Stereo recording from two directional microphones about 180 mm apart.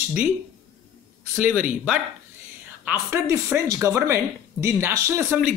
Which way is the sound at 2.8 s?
15° right (ahead or behind).